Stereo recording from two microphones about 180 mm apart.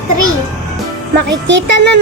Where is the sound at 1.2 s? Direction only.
80° right.